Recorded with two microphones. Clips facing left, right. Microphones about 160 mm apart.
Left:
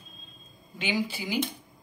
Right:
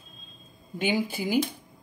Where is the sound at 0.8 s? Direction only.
50° right (ahead or behind).